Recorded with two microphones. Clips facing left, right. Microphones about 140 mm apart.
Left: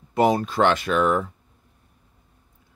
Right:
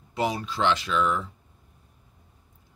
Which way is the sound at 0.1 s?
50° left (ahead or behind).